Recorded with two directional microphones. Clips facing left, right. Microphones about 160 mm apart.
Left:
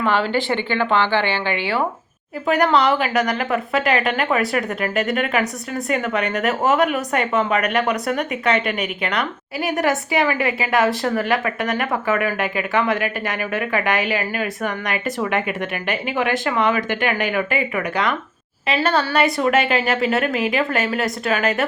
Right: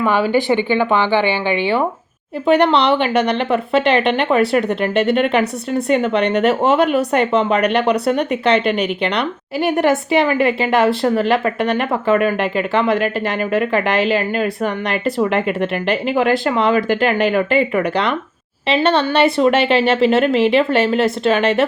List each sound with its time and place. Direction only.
0.0 s speech: 15° right (ahead or behind)